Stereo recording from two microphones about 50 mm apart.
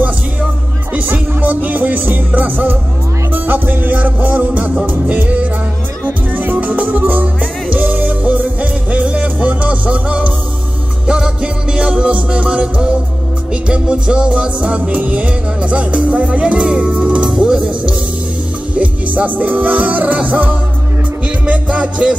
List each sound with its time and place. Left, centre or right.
0.9 s music: right